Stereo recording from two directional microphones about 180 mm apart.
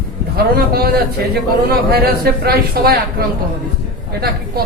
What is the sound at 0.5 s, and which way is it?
Speech, 60° right (ahead or behind).